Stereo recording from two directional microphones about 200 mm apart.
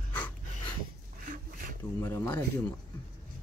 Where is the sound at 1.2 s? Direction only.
40° right (ahead or behind).